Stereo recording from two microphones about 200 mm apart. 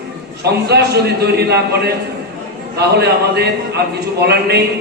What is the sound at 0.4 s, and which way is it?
A man's voice, 55° right (ahead or behind).